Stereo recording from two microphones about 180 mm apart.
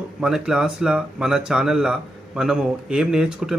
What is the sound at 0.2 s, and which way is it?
Speech, 5° right (ahead or behind).